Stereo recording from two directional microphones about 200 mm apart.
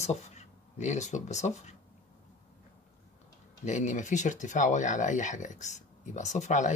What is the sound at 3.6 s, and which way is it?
Speech, 35° left (ahead or behind).